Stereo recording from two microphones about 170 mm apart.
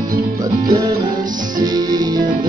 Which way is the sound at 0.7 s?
25° right (ahead or behind).